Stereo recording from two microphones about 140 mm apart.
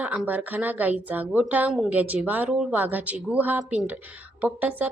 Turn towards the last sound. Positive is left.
turn(degrees=-15)  # may be behind; listen again after turning